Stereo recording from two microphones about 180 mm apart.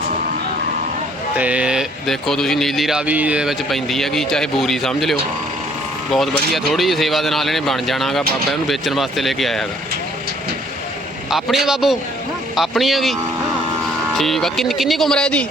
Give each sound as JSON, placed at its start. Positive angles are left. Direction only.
{"t": 1.4, "sound": "speech", "side_deg": -5}
{"t": 6.1, "sound": "speech", "side_deg": 0}
{"t": 11.3, "sound": "speech", "side_deg": 0}
{"t": 14.2, "sound": "speech", "side_deg": 0}